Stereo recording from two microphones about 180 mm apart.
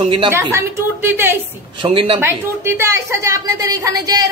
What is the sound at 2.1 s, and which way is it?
A woman's voice, 15° right (ahead or behind).